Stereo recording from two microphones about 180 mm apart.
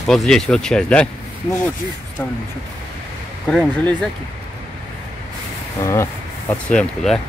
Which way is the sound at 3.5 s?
5° left (ahead or behind).